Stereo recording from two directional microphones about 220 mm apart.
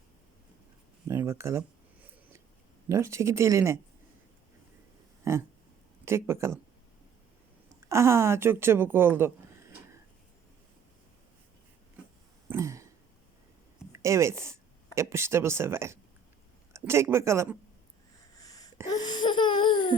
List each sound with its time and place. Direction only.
1.0 s speech: 10° right (ahead or behind)
2.9 s a woman's voice: 15° right (ahead or behind)
5.2 s a sound: 10° right (ahead or behind)
6.1 s a woman's voice: 10° right (ahead or behind)
7.9 s a woman's voice: 10° right (ahead or behind)
12.5 s throat clearing: 15° right (ahead or behind)
13.9 s a woman's voice: 15° right (ahead or behind)
18.3 s a sound: 15° left (ahead or behind)